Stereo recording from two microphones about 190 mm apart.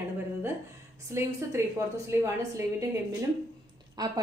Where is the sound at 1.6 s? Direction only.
15° right (ahead or behind).